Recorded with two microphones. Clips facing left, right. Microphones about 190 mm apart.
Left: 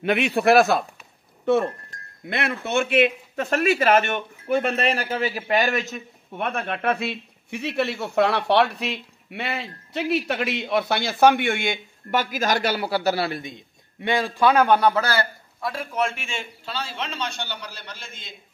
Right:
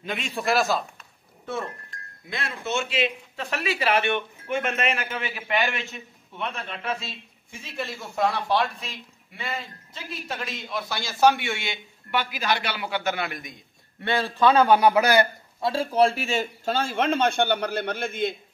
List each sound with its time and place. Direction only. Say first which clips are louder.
0.0 s a man's voice: left 9 dB; 65° left (ahead or behind); by 13.6 s 30° left (ahead or behind)
14.0 s a man's voice: left 1 dB; 15° left (ahead or behind)
14.7 s a man's voice: right 1 dB; 10° right (ahead or behind); by 18.3 s 55° right (ahead or behind)